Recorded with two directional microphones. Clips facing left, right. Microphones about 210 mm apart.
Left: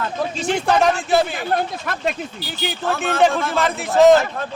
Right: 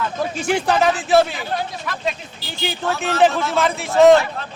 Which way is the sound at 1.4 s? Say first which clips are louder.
Left 4 dB; 55° left (ahead or behind).